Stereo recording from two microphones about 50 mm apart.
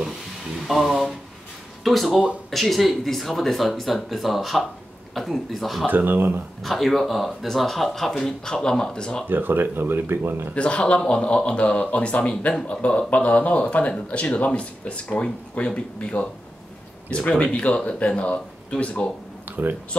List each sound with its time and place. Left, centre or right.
0.7 s speech: centre
5.9 s speech: right
6.6 s speech: centre
9.3 s speech: right
10.5 s speech: left
19.4 s a sound: right